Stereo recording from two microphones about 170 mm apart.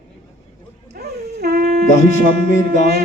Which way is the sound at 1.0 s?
65° right (ahead or behind).